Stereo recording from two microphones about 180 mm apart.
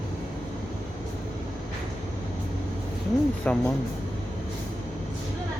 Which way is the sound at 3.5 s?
5° left (ahead or behind).